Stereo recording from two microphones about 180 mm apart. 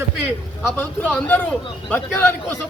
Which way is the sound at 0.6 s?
10° left (ahead or behind).